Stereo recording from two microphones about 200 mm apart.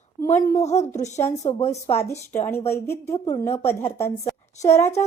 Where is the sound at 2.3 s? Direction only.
10° left (ahead or behind).